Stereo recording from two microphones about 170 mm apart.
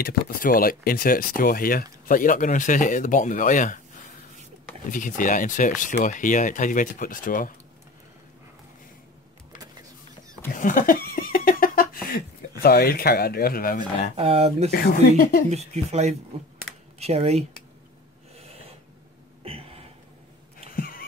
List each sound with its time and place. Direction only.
0.0 s speech: 55° left (ahead or behind)
4.9 s speech: 50° left (ahead or behind)
10.5 s laughter: 50° left (ahead or behind)
14.1 s speech: 35° right (ahead or behind)
14.7 s speech: 60° left (ahead or behind)
15.5 s speech: 40° right (ahead or behind)
18.3 s snort: 35° right (ahead or behind)
19.4 s a sound: 35° right (ahead or behind)
20.7 s a sound: 55° left (ahead or behind)